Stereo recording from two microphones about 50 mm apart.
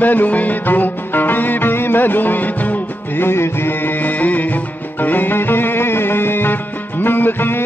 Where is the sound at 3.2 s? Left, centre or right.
Left.